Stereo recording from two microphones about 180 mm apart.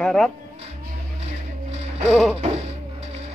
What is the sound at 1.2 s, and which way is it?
Music, 35° right (ahead or behind).